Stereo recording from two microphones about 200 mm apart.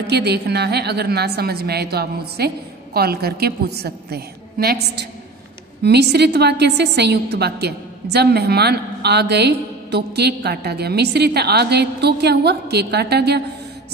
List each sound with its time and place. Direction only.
0.0 s a woman's voice: 55° right (ahead or behind)